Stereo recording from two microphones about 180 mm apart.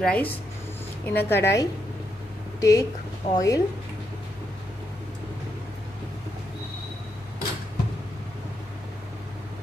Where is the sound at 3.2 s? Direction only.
30° left (ahead or behind).